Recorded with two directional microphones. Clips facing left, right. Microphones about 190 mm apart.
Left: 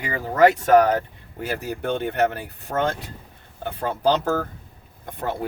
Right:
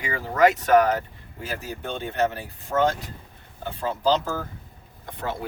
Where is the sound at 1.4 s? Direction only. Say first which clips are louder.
Left 6 dB; 60° left (ahead or behind).